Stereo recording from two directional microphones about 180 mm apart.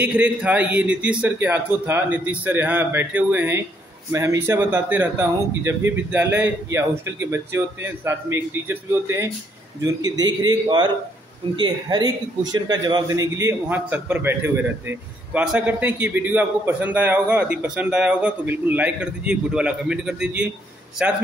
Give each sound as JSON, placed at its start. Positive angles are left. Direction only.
{"t": 0.0, "sound": "a man's voice", "side_deg": -10}